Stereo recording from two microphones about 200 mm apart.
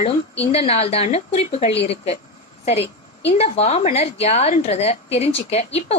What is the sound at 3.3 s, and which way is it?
Speech, 30° left (ahead or behind).